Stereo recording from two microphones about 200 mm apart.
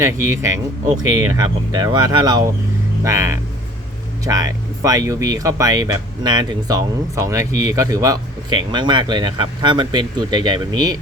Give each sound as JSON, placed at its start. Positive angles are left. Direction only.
{"t": 0.0, "sound": "speech", "side_deg": -15}